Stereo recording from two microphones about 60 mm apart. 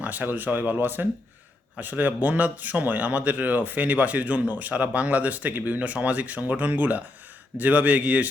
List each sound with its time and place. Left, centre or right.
0.0 s speech: right